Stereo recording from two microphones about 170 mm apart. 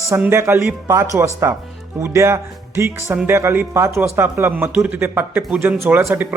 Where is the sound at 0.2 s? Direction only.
15° right (ahead or behind).